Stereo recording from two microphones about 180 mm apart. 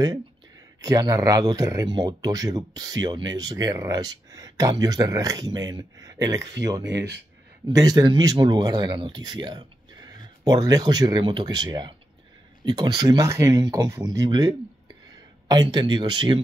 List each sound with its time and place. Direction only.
0.7 s speech: 20° right (ahead or behind)
7.7 s speech: 20° right (ahead or behind)